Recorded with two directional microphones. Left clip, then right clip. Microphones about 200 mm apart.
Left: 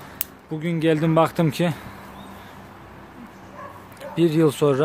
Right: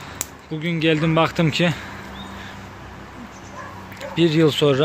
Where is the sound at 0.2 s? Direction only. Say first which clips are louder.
Right 1 dB; 20° left (ahead or behind).